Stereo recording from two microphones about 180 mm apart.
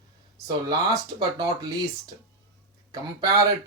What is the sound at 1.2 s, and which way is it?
Speech, 20° right (ahead or behind).